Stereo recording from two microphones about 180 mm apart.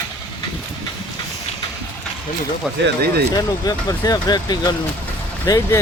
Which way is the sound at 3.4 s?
20° left (ahead or behind).